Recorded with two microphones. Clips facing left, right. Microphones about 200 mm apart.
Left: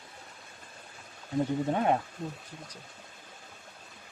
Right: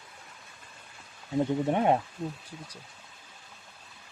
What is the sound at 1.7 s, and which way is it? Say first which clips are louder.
Speech: right 3 dB; 20° right (ahead or behind).